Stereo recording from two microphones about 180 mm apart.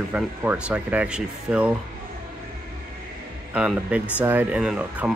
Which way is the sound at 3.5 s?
5° right (ahead or behind).